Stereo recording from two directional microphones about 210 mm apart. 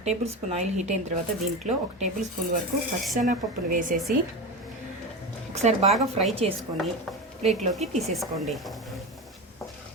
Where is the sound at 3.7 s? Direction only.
40° right (ahead or behind).